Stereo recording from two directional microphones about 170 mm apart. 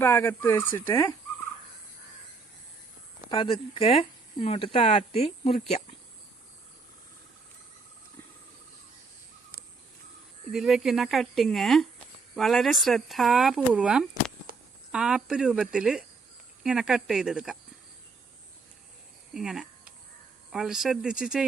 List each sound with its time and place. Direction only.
0.0 s turkey: 15° left (ahead or behind)
3.2 s speech: 30° left (ahead or behind)
10.5 s speech: centre (ahead or behind)
19.3 s a sound: 5° right (ahead or behind)
20.5 s speech: centre (ahead or behind)